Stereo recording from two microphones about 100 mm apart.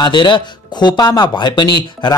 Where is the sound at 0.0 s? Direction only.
50° left (ahead or behind).